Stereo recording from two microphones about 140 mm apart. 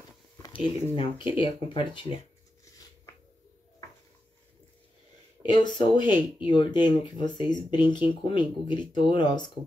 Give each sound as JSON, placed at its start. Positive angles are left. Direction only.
{"t": 0.5, "sound": "speech", "side_deg": 40}
{"t": 5.4, "sound": "speech", "side_deg": 30}